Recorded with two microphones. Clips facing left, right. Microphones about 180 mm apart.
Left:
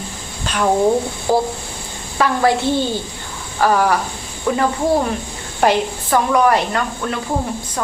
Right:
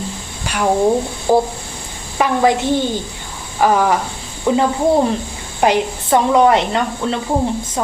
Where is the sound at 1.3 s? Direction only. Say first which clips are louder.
Right 3 dB; 15° right (ahead or behind).